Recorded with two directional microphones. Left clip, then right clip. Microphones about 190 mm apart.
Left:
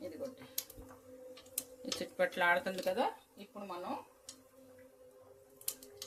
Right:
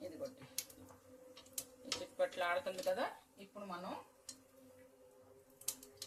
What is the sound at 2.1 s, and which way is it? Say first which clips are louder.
Speech: left 6 dB; 40° left (ahead or behind).